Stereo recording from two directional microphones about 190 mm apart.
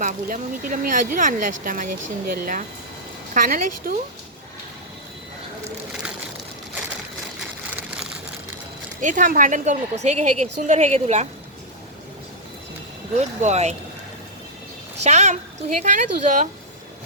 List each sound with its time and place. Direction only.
0.0 s speech: 45° right (ahead or behind)
9.0 s speech: 45° right (ahead or behind)
13.1 s speech: 35° right (ahead or behind)
15.0 s speech: 35° right (ahead or behind)